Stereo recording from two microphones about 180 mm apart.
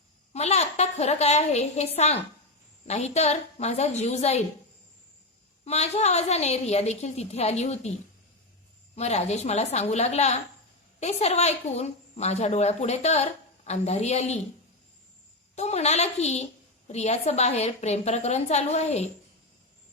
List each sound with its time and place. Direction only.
0.3 s a woman's voice: 35° left (ahead or behind)
5.6 s a woman's voice: 35° left (ahead or behind)
9.0 s a woman's voice: 40° left (ahead or behind)
15.5 s a woman's voice: 40° left (ahead or behind)